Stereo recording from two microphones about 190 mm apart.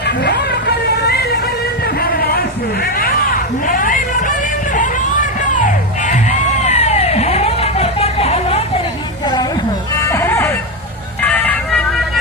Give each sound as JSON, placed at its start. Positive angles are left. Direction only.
{"t": 0.0, "sound": "vehicle", "side_deg": 65}
{"t": 1.1, "sound": "music", "side_deg": 55}
{"t": 1.8, "sound": "a sound", "side_deg": 55}
{"t": 2.8, "sound": "hubbub", "side_deg": 50}
{"t": 5.6, "sound": "music", "side_deg": 40}
{"t": 9.2, "sound": "a sound", "side_deg": 20}
{"t": 9.9, "sound": "music", "side_deg": 15}